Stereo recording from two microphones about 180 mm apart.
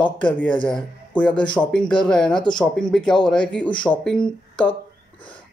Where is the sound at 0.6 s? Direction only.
5° left (ahead or behind).